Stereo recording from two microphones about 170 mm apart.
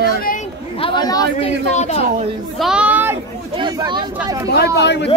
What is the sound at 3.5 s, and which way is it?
Speech, 25° right (ahead or behind).